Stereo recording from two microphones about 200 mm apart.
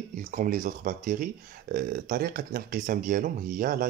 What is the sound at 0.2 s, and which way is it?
Speech, 40° right (ahead or behind).